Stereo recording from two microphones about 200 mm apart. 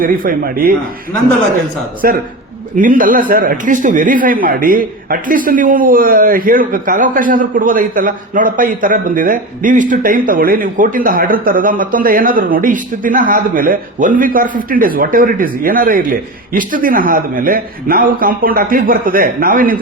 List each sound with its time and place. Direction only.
0.0 s a man's voice: 45° right (ahead or behind)
2.0 s a man's voice: 50° right (ahead or behind)